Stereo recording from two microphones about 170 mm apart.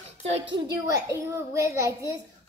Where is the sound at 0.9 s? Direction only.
20° right (ahead or behind).